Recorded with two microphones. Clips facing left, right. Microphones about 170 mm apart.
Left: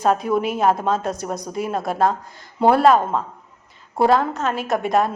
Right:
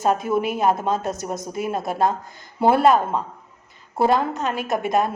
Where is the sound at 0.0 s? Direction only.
Centre (ahead or behind).